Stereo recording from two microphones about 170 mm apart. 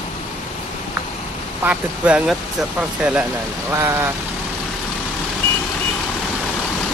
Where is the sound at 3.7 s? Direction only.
15° right (ahead or behind).